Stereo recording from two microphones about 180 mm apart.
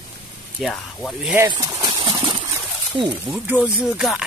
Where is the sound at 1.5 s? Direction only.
25° right (ahead or behind).